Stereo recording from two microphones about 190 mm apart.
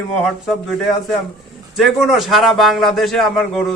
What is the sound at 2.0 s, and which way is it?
A man's voice, centre (ahead or behind).